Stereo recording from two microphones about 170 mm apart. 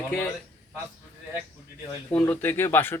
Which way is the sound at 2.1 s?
10° left (ahead or behind).